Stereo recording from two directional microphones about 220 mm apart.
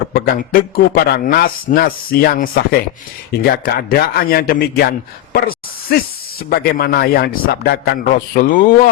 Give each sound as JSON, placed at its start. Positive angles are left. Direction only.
{"t": 0.1, "sound": "speech", "side_deg": 40}
{"t": 5.3, "sound": "a sound", "side_deg": 40}
{"t": 6.5, "sound": "speech", "side_deg": 45}